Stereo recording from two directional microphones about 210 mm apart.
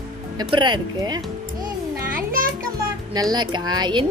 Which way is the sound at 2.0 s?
40° right (ahead or behind).